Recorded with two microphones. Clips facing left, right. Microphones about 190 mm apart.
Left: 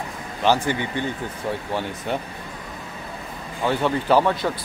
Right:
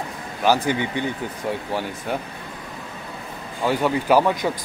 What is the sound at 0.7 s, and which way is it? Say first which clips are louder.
Speech: right 2 dB; 15° right (ahead or behind).